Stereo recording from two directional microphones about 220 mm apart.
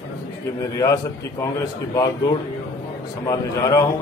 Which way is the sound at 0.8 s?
15° left (ahead or behind).